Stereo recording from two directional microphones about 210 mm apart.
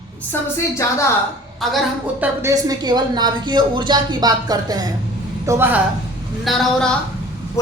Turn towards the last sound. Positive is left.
turn(degrees=0)  # may be behind; listen again after turning